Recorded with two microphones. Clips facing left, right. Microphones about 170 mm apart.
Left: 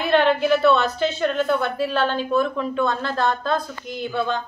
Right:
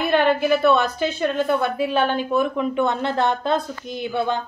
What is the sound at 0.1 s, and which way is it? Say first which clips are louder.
A woman's voice: left 1 dB; 10° right (ahead or behind).